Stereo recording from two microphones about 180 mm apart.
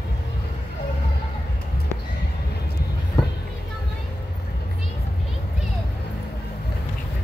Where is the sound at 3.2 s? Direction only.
20° left (ahead or behind).